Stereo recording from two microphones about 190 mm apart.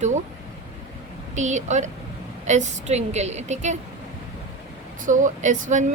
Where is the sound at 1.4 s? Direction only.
40° right (ahead or behind).